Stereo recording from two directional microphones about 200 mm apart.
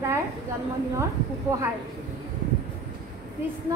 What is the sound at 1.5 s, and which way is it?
Speech, 15° right (ahead or behind).